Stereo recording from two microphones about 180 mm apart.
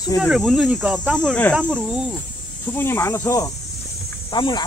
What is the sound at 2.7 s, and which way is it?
Speech, 10° left (ahead or behind).